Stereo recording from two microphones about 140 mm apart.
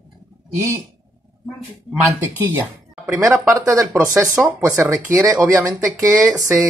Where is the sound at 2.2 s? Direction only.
15° right (ahead or behind).